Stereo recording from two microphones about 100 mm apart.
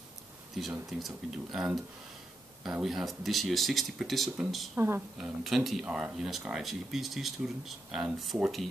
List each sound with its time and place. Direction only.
0.8 s speech: centre (ahead or behind)
4.7 s a woman's voice: 25° right (ahead or behind)
5.1 s speech: 5° right (ahead or behind)